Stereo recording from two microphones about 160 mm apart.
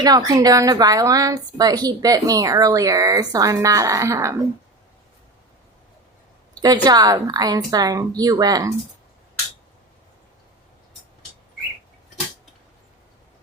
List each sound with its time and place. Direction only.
0.0 s a woman's voice: 25° right (ahead or behind)
6.5 s a woman's voice: 25° right (ahead or behind)